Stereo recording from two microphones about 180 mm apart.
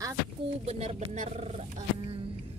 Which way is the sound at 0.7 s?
35° right (ahead or behind).